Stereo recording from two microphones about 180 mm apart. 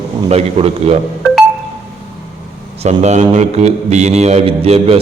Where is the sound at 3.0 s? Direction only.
40° right (ahead or behind).